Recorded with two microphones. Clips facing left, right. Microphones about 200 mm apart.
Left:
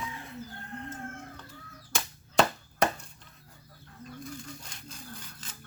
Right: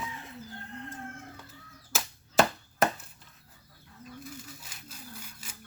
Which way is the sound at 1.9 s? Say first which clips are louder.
Even; 5° right (ahead or behind).